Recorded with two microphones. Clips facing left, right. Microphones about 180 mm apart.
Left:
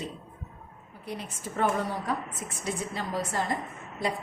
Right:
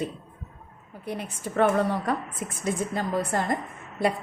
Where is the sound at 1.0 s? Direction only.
60° right (ahead or behind).